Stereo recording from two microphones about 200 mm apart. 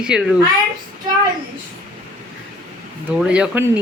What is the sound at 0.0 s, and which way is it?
Speech, 5° right (ahead or behind).